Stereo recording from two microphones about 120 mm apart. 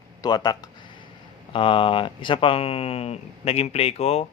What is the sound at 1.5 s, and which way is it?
Speech, 45° left (ahead or behind).